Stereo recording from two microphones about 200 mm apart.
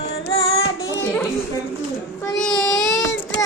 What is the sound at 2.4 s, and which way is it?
Child singing, 5° left (ahead or behind).